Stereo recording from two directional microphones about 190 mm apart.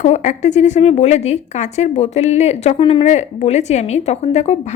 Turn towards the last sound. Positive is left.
turn(degrees=35)  # may be behind; listen again after turning